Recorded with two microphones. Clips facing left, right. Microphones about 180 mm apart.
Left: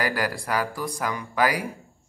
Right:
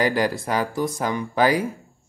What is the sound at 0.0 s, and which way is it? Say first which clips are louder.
Speech: right 5 dB; 25° right (ahead or behind).